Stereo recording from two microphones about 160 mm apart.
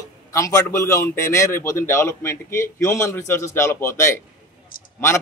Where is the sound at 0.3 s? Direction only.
20° left (ahead or behind).